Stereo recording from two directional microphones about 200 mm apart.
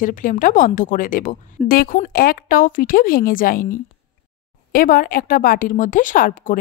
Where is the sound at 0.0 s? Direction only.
40° left (ahead or behind).